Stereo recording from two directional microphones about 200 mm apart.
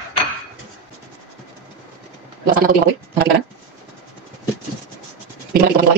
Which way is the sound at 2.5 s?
45° right (ahead or behind).